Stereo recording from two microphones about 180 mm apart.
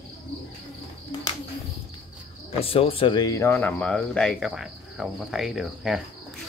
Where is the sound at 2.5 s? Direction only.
30° left (ahead or behind); by 6.0 s centre (ahead or behind).